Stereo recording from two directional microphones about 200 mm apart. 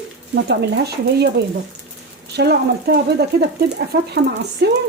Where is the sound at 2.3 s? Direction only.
55° right (ahead or behind).